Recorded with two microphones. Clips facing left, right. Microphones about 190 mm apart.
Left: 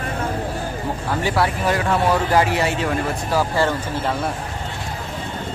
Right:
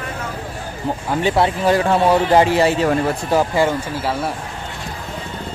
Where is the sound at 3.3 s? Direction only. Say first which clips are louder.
Right 3 dB; 15° right (ahead or behind).